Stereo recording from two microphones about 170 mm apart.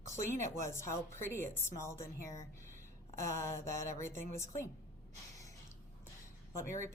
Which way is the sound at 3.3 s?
15° left (ahead or behind).